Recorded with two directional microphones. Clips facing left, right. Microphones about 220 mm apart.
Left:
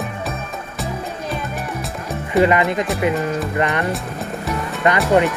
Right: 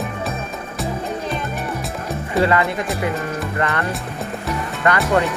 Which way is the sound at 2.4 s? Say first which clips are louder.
Left 3 dB; 15° left (ahead or behind).